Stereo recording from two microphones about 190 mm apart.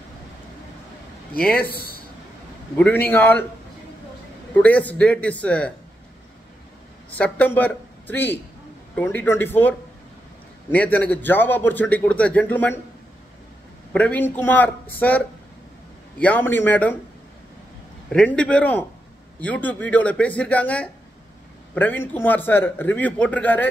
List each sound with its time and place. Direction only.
1.3 s speech: 50° left (ahead or behind)
1.6 s a man's voice: 10° left (ahead or behind)
4.6 s a man's voice: 10° left (ahead or behind)
7.1 s a man's voice: 10° left (ahead or behind)
13.9 s a man's voice: 10° left (ahead or behind)
18.1 s a man's voice: 5° left (ahead or behind)